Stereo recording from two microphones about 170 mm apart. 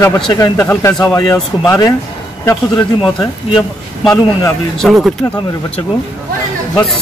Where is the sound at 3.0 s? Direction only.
Centre (ahead or behind).